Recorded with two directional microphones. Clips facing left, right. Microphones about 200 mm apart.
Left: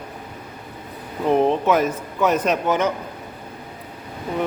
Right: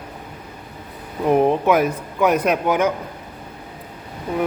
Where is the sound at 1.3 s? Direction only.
10° right (ahead or behind).